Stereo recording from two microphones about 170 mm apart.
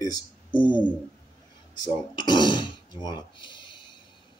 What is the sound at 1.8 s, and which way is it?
Speech, 25° left (ahead or behind).